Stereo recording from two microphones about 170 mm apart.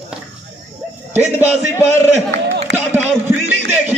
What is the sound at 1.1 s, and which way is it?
Speech, 10° right (ahead or behind).